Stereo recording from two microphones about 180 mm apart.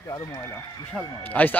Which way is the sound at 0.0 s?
15° left (ahead or behind).